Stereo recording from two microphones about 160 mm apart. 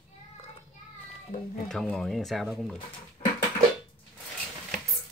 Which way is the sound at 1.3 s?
60° left (ahead or behind).